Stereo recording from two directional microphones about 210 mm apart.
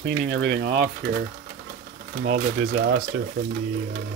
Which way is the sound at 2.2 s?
45° right (ahead or behind).